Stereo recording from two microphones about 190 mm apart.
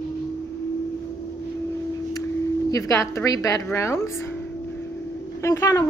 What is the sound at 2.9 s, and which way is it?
A woman's voice, 15° left (ahead or behind).